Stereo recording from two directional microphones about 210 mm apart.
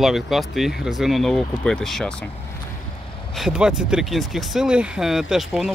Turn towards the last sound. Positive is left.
turn(degrees=0)  # may be behind; listen again after turning